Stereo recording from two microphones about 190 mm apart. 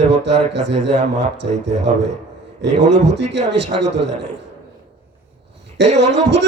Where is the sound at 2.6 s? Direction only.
65° right (ahead or behind).